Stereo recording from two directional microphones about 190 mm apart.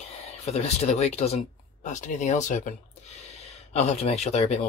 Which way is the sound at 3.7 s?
35° left (ahead or behind).